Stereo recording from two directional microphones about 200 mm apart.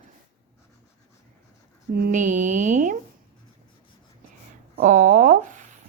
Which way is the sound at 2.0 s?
40° right (ahead or behind).